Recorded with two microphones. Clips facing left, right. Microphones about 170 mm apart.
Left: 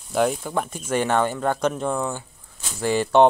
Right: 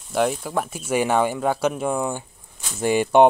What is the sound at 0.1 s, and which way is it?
Speech, centre (ahead or behind).